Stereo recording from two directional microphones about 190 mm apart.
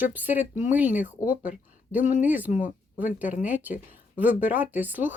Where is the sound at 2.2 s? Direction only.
10° right (ahead or behind).